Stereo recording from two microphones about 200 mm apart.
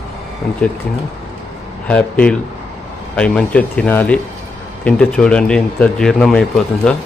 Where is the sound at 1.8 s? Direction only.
5° left (ahead or behind).